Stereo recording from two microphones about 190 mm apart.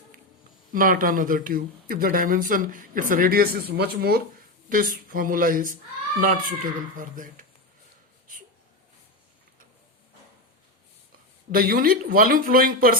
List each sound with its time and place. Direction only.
0.7 s speech: 45° right (ahead or behind)
11.5 s speech: 50° right (ahead or behind)